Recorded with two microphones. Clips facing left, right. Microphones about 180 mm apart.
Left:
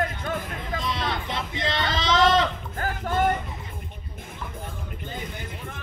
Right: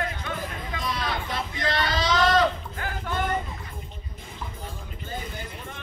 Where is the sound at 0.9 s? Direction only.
25° left (ahead or behind).